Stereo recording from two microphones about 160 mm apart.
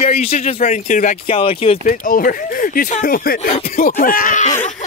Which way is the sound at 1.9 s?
60° left (ahead or behind).